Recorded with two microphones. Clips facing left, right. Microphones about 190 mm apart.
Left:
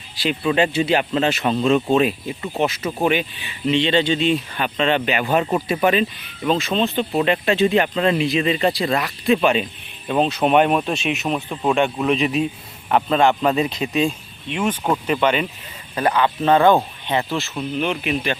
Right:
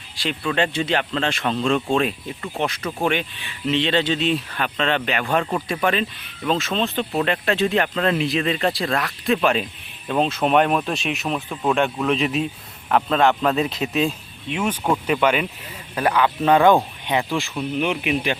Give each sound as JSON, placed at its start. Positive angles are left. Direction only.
{"t": 0.4, "sound": "speech", "side_deg": 10}